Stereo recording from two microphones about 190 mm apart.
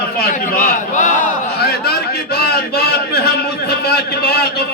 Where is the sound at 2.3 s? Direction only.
55° left (ahead or behind).